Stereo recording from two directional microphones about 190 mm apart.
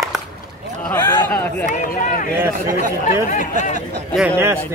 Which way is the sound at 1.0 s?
20° left (ahead or behind).